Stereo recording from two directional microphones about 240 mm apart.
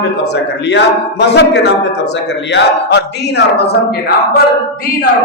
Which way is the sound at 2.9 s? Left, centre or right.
Left.